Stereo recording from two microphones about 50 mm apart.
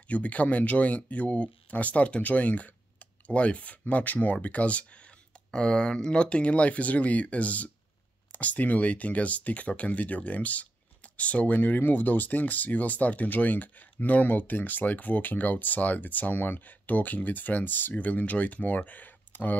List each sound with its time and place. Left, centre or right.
0.1 s speech: left
5.5 s speech: centre; by 19.5 s left